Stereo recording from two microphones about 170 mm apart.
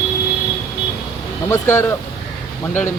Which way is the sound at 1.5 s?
15° left (ahead or behind).